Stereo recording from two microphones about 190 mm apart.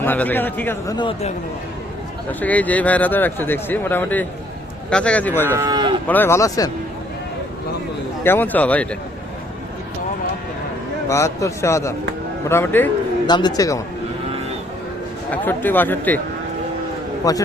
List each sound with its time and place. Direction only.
0.0 s speech: 10° left (ahead or behind)
0.9 s speech: 25° left (ahead or behind)
2.4 s speech: 10° left (ahead or behind)
5.5 s speech: 20° right (ahead or behind)
6.1 s speech: 10° left (ahead or behind)
8.2 s speech: 10° left (ahead or behind)
11.1 s speech: 15° left (ahead or behind)
13.2 s speech: 20° left (ahead or behind)
15.3 s speech: 10° left (ahead or behind)
17.2 s speech: 20° left (ahead or behind)